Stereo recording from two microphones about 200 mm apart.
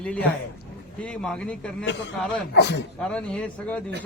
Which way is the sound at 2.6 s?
55° left (ahead or behind).